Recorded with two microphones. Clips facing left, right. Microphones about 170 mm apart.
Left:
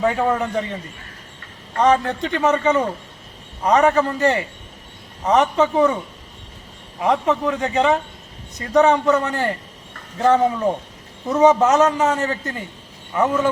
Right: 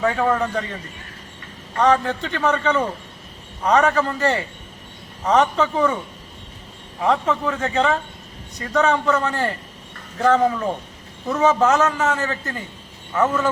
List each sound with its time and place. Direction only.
0.0 s a man's voice: 20° left (ahead or behind)
1.8 s a man's voice: 20° left (ahead or behind)
7.0 s a man's voice: 20° left (ahead or behind)